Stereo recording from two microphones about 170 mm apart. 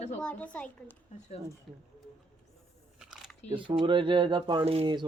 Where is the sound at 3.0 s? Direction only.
Centre (ahead or behind).